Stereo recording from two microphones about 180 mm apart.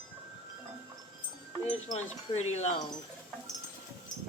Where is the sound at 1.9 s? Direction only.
40° left (ahead or behind).